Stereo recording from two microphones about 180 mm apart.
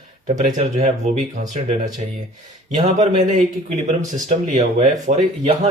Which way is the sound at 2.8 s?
45° right (ahead or behind).